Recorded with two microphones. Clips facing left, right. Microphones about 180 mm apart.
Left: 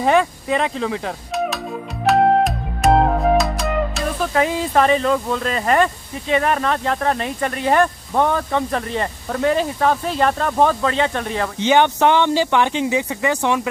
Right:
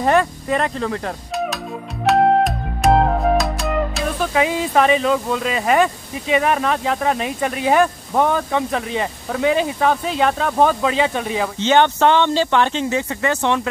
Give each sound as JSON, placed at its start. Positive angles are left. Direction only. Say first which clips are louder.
{"t": 0.0, "sound": "speech", "louder": "even", "side_deg": 0}
{"t": 2.0, "sound": "music", "louder": "even", "side_deg": 0}
{"t": 11.5, "sound": "speech", "louder": "even", "side_deg": 15}